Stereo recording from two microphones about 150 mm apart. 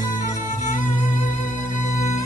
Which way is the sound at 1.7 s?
55° left (ahead or behind).